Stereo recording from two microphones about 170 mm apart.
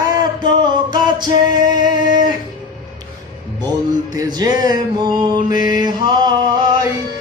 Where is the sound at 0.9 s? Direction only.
25° right (ahead or behind).